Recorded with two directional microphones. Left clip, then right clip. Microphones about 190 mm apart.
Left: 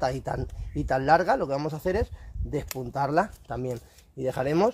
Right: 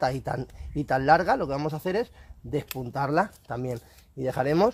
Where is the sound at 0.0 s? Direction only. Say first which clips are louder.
Right 1 dB; 30° right (ahead or behind).